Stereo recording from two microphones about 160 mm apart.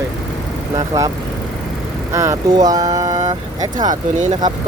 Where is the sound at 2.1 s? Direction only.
20° right (ahead or behind).